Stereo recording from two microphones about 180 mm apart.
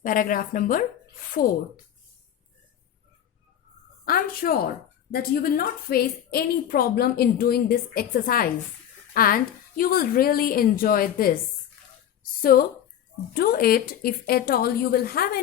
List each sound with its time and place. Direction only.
0.0 s a woman's voice: 50° left (ahead or behind)
4.0 s a woman's voice: 55° left (ahead or behind)
12.4 s a woman's voice: 50° left (ahead or behind)